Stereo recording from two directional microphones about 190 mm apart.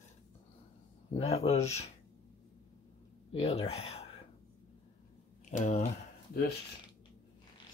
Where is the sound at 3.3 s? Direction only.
30° left (ahead or behind).